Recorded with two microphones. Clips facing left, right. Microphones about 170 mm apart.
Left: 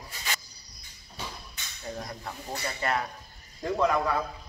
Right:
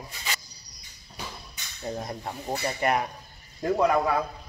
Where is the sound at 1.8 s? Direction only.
30° right (ahead or behind).